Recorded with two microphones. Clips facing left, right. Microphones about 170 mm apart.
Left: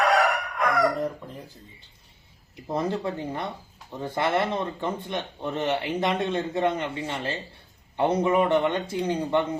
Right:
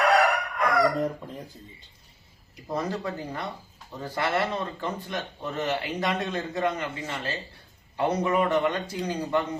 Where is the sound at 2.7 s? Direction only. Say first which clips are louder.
Left 3 dB; 25° left (ahead or behind).